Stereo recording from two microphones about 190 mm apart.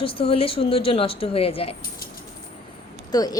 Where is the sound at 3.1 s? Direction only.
20° left (ahead or behind).